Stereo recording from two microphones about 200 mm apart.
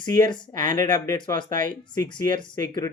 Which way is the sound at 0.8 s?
20° left (ahead or behind).